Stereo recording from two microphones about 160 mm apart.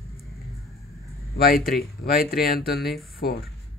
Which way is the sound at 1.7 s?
70° left (ahead or behind).